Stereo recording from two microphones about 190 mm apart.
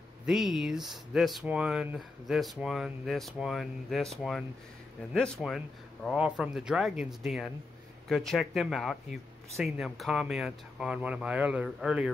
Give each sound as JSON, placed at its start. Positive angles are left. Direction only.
{"t": 0.3, "sound": "speech", "side_deg": 0}